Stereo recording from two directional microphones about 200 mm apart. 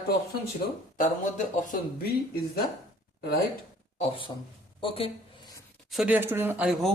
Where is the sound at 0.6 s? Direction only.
50° left (ahead or behind).